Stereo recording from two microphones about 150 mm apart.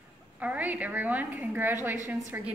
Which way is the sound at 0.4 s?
10° right (ahead or behind).